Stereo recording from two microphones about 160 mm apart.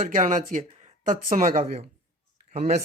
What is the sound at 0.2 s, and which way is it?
Speech, 55° right (ahead or behind).